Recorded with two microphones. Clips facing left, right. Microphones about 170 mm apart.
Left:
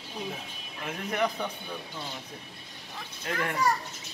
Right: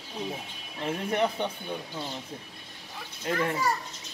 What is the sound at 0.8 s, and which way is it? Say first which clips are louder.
Speech: right 3 dB; 30° right (ahead or behind).